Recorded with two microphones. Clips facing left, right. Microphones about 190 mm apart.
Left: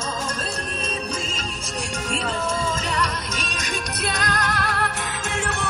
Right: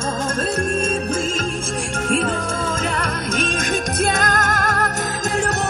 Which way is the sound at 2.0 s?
50° right (ahead or behind).